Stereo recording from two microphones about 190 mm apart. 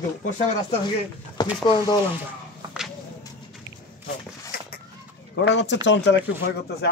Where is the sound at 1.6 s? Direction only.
20° left (ahead or behind).